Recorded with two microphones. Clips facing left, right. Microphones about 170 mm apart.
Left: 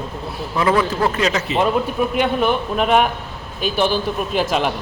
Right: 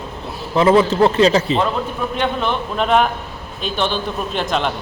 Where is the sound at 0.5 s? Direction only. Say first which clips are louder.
Right 5 dB; 25° right (ahead or behind).